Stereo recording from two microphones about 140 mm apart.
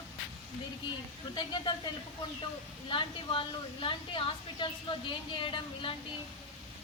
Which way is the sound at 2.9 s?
40° left (ahead or behind).